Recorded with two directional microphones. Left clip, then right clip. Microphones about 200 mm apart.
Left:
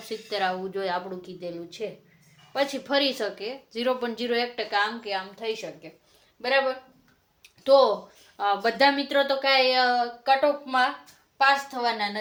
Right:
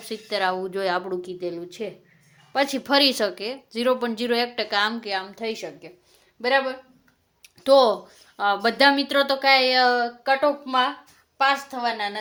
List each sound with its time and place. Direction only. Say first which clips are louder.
0.1 s speech: right 3 dB; 40° right (ahead or behind)
7.4 s a sound: right 2 dB; 55° right (ahead or behind)
8.4 s speech: right 3 dB; 45° right (ahead or behind)
11.3 s a woman's voice: even; 35° right (ahead or behind)